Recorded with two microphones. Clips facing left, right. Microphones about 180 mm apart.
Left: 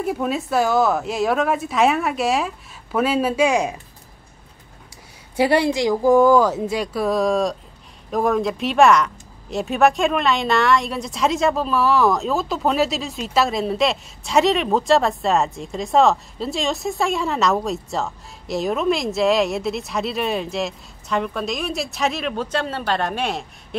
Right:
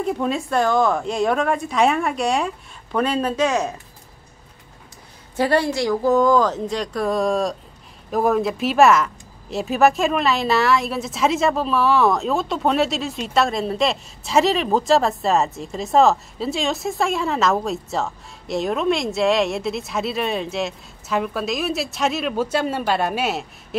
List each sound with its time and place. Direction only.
0.0 s speech: 5° left (ahead or behind)
5.3 s speech: 15° left (ahead or behind); by 23.8 s 5° right (ahead or behind)